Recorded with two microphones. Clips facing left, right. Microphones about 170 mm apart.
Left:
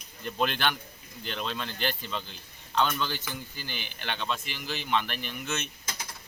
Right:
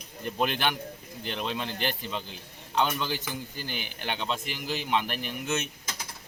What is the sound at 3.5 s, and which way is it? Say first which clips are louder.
Speech: right 3 dB; 50° right (ahead or behind).